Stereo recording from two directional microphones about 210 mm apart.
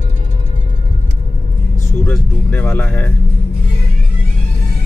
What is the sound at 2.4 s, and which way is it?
Speech, 5° left (ahead or behind).